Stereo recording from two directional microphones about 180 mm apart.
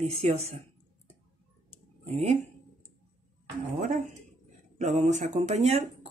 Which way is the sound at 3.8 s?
45° right (ahead or behind).